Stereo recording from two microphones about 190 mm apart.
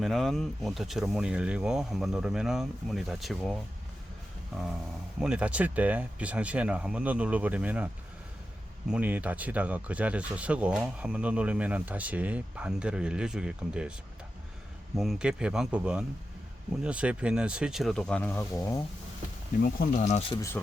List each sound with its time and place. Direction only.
0.0 s speech: centre (ahead or behind)
5.2 s speech: 5° right (ahead or behind)
8.9 s speech: 10° right (ahead or behind)
14.9 s speech: centre (ahead or behind)
19.6 s speech: 45° left (ahead or behind)